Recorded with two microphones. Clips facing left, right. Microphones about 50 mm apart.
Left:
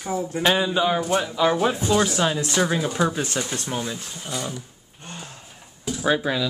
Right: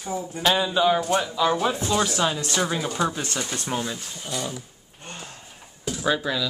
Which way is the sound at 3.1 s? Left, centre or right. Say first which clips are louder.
Left 3 dB; centre.